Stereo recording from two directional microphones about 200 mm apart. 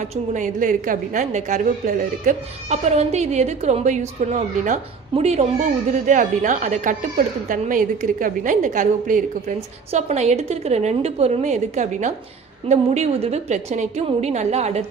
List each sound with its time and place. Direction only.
0.0 s a woman's voice: 40° right (ahead or behind)